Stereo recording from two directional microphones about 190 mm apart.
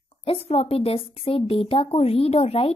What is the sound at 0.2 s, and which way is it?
Speech, 30° left (ahead or behind).